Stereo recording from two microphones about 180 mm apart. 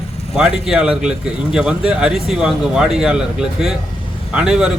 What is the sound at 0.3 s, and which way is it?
A man's voice, 5° right (ahead or behind).